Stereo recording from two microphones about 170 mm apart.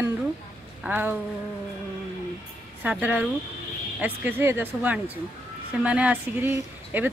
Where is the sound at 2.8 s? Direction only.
10° right (ahead or behind).